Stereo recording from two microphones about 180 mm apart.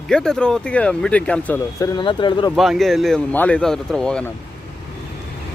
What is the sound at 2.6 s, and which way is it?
Speech, centre (ahead or behind).